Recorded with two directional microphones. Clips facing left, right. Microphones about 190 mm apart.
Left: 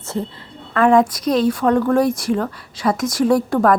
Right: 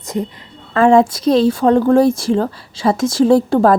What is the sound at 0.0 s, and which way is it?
A woman's voice, 15° right (ahead or behind).